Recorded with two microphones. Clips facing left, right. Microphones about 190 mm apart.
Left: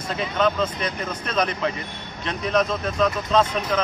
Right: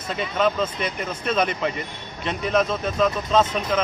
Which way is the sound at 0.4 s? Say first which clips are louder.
Even; 5° right (ahead or behind).